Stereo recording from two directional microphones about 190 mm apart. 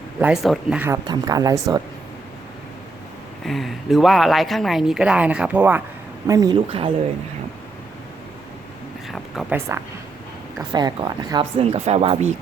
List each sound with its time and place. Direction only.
0.2 s speech: 5° right (ahead or behind)
1.0 s speech: 20° right (ahead or behind)
3.4 s speech: centre (ahead or behind); by 6.6 s 20° right (ahead or behind)
9.1 s a sound: centre (ahead or behind)
9.6 s speech: 15° right (ahead or behind); by 12.3 s 35° right (ahead or behind)